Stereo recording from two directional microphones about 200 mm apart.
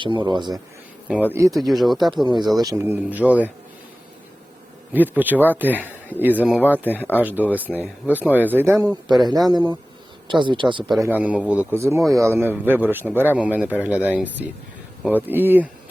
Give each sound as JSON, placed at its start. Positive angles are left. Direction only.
{"t": 0.0, "sound": "a man's voice", "side_deg": -25}
{"t": 1.5, "sound": "speech", "side_deg": 0}
{"t": 2.6, "sound": "a man's voice", "side_deg": -15}
{"t": 4.9, "sound": "a man's voice", "side_deg": -10}
{"t": 6.8, "sound": "speech", "side_deg": 10}
{"t": 7.2, "sound": "a man's voice", "side_deg": -10}
{"t": 11.0, "sound": "a man's voice", "side_deg": -10}